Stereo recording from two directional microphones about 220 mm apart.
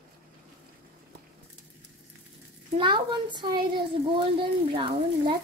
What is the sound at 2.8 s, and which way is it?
Speech, 20° right (ahead or behind).